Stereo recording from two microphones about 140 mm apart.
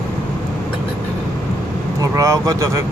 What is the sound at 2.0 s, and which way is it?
Speech, 25° right (ahead or behind).